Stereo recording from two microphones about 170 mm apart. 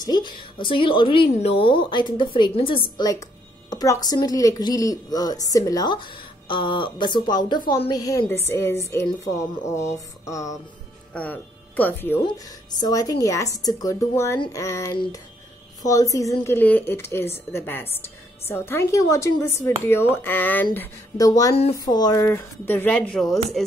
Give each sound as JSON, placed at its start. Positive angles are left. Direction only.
{"t": 0.0, "sound": "a woman's voice", "side_deg": 25}
{"t": 3.0, "sound": "a woman's voice", "side_deg": 20}
{"t": 12.2, "sound": "a woman's voice", "side_deg": 25}